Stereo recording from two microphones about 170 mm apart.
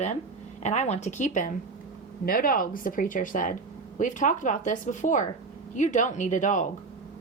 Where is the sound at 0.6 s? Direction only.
40° left (ahead or behind).